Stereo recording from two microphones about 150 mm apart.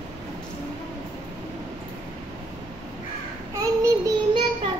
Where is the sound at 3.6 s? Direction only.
20° right (ahead or behind).